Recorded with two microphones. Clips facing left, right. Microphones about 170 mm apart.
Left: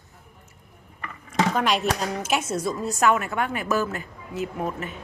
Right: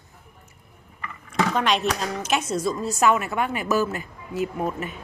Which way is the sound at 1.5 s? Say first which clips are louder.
Even; 5° left (ahead or behind).